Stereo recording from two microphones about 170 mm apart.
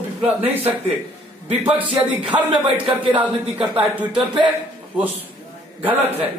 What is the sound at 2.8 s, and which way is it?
Speech, 30° right (ahead or behind).